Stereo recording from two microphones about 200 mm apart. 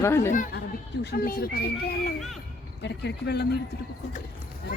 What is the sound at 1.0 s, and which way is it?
Speech, 50° left (ahead or behind).